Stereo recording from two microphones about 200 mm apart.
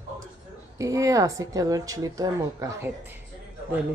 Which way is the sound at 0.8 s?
15° right (ahead or behind).